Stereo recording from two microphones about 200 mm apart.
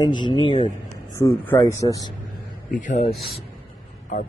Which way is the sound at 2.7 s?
35° left (ahead or behind).